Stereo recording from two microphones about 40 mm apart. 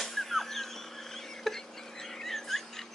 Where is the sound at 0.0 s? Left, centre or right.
Centre.